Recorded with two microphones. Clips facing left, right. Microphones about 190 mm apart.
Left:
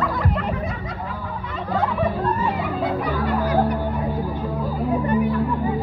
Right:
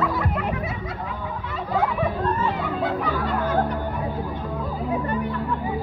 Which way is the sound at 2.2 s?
10° left (ahead or behind).